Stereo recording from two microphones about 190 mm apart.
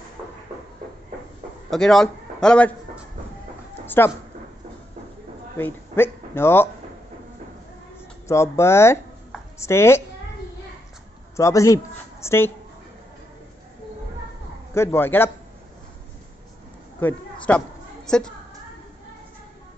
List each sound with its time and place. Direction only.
1.7 s a man's voice: centre (ahead or behind)
3.8 s a sound: 10° left (ahead or behind)
5.6 s speech: 10° left (ahead or behind)
8.3 s speech: 15° left (ahead or behind)
11.3 s a man's voice: 15° left (ahead or behind)
14.7 s a man's voice: 15° left (ahead or behind)
17.0 s a sound: 5° left (ahead or behind)